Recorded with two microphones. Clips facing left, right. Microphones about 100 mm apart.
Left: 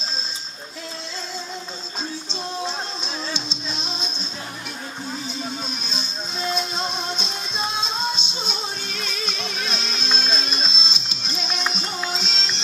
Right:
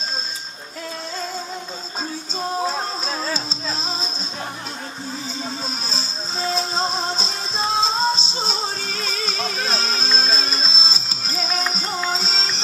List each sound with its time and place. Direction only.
2.6 s music: 45° right (ahead or behind)
5.4 s music: 35° right (ahead or behind)